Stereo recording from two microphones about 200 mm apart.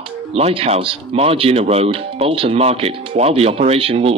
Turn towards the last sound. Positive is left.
turn(degrees=-30)  # may be behind; listen again after turning